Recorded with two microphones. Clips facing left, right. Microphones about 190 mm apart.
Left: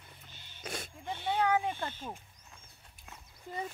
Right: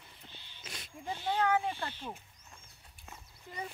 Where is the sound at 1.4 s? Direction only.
15° left (ahead or behind).